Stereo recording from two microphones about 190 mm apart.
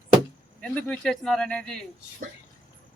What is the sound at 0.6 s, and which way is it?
A man's voice, 5° left (ahead or behind).